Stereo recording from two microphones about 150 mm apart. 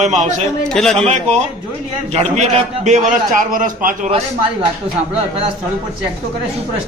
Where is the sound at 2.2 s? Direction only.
50° right (ahead or behind); by 4.1 s 65° right (ahead or behind).